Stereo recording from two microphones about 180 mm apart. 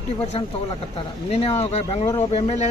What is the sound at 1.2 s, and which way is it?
Speech, 35° left (ahead or behind).